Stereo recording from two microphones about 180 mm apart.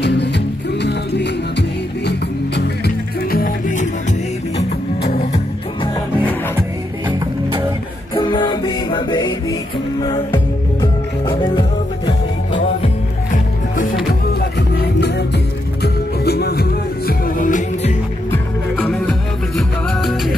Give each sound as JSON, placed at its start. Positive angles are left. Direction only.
{"t": 0.0, "sound": "music", "side_deg": 70}
{"t": 8.1, "sound": "music", "side_deg": 25}
{"t": 14.8, "sound": "music", "side_deg": 70}
{"t": 18.3, "sound": "music", "side_deg": 10}